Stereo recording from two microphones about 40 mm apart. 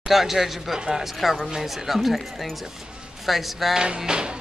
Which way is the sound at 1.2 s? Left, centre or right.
Centre.